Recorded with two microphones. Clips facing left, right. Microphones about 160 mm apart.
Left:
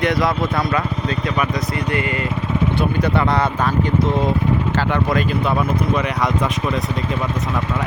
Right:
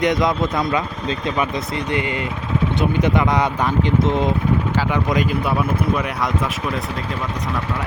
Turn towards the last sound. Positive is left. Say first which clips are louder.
# left 2 dB
turn(degrees=0)  # may be behind; listen again after turning